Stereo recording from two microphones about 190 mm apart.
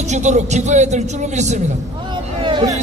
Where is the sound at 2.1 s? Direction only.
25° right (ahead or behind).